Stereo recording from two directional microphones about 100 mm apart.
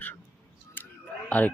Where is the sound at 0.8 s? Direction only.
20° left (ahead or behind).